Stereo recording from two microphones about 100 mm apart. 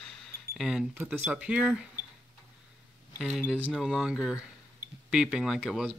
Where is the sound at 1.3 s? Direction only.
10° right (ahead or behind).